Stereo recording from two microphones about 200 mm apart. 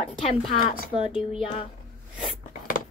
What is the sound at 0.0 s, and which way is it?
Speech, 30° left (ahead or behind).